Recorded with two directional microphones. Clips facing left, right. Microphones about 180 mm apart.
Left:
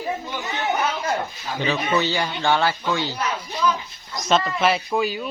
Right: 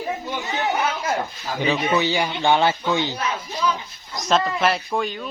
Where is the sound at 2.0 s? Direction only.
15° right (ahead or behind).